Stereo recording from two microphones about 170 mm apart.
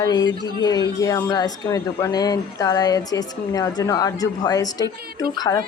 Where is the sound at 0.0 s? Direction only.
25° left (ahead or behind).